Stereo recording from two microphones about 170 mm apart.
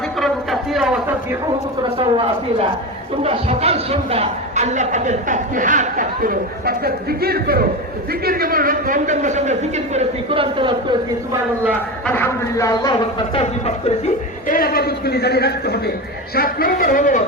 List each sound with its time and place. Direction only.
0.2 s a sound: centre (ahead or behind)
2.0 s speech: 35° right (ahead or behind)
12.0 s speech: 10° left (ahead or behind); by 13.4 s 30° left (ahead or behind)
13.4 s speech: 40° left (ahead or behind)
14.4 s a man's voice: 55° left (ahead or behind)